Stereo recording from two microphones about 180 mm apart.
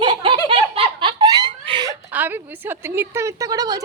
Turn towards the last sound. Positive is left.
turn(degrees=-20)  # may be behind; listen again after turning